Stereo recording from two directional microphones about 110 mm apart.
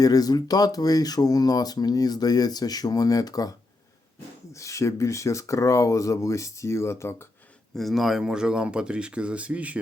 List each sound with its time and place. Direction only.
0.0 s speech: 35° left (ahead or behind)
4.5 s speech: 30° left (ahead or behind)
7.8 s speech: centre (ahead or behind)